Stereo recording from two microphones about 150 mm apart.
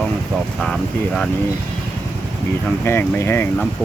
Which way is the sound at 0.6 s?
5° left (ahead or behind).